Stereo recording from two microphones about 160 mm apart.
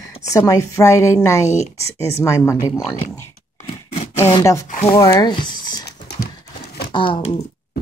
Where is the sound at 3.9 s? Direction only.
45° left (ahead or behind).